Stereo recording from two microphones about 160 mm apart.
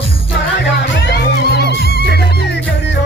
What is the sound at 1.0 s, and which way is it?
Music, 90° left.